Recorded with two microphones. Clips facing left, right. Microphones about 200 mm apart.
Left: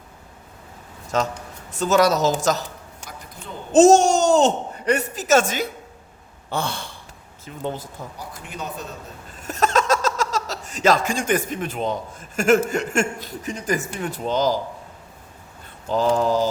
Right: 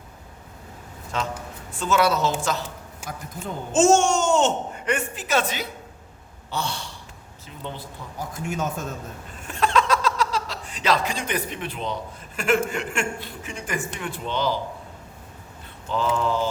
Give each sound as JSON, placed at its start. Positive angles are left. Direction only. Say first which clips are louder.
{"t": 1.1, "sound": "speech", "louder": "left 5 dB", "side_deg": 40}
{"t": 3.7, "sound": "speech", "louder": "left 5 dB", "side_deg": 35}
{"t": 8.2, "sound": "speech", "louder": "right 8 dB", "side_deg": -45}
{"t": 9.4, "sound": "a sound", "louder": "left 1 dB", "side_deg": 40}
{"t": 12.4, "sound": "speech", "louder": "left 5 dB", "side_deg": 45}
{"t": 15.9, "sound": "speech", "louder": "left 5 dB", "side_deg": 40}